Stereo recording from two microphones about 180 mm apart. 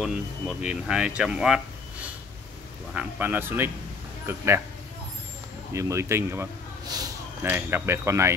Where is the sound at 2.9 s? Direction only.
10° right (ahead or behind).